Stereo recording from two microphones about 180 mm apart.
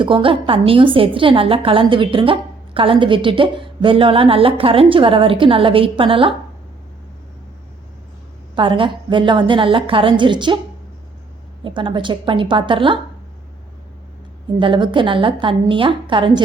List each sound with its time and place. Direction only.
0.0 s a woman's voice: 30° right (ahead or behind)
8.5 s a woman's voice: 30° right (ahead or behind)
11.6 s a woman's voice: 30° right (ahead or behind)
14.6 s a woman's voice: 25° right (ahead or behind)